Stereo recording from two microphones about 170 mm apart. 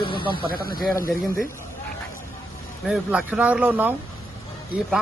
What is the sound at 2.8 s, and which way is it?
A man's voice, 5° right (ahead or behind).